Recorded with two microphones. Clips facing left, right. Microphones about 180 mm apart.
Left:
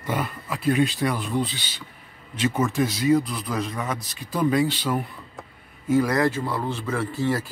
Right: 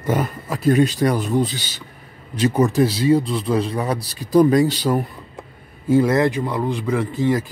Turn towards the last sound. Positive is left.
turn(degrees=-15)  # may be behind; listen again after turning